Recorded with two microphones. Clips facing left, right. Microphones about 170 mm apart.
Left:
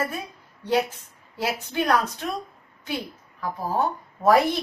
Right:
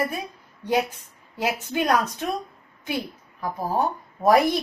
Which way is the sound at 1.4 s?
15° right (ahead or behind).